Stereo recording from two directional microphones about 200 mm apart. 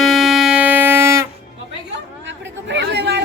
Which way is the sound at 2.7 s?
55° right (ahead or behind).